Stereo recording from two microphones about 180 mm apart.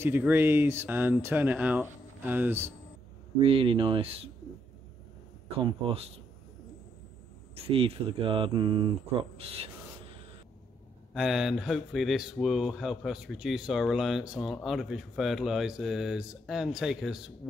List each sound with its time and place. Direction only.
0.0 s speech: 10° right (ahead or behind)
3.3 s speech: 30° right (ahead or behind)
5.6 s speech: 30° right (ahead or behind)
7.5 s speech: 30° right (ahead or behind)
11.1 s speech: centre (ahead or behind)